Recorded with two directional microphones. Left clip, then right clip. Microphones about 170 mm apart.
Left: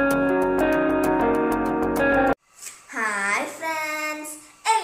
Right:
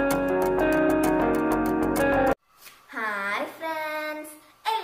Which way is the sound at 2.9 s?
Centre (ahead or behind).